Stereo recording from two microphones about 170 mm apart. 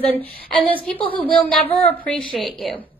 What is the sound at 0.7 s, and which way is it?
Speech, 30° left (ahead or behind).